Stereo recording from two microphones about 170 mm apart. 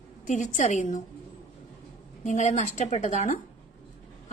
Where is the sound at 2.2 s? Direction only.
45° left (ahead or behind).